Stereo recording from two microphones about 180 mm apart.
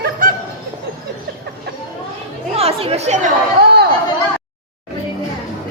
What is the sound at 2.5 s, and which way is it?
Speech, 35° right (ahead or behind).